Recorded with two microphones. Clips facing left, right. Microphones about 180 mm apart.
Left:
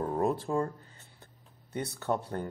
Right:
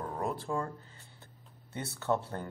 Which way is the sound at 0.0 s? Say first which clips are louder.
Left 6 dB; 25° left (ahead or behind).